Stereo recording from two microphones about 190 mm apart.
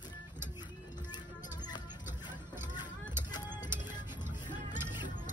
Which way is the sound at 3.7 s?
10° right (ahead or behind).